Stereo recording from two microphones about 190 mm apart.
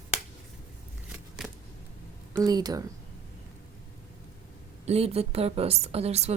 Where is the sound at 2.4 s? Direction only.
20° right (ahead or behind).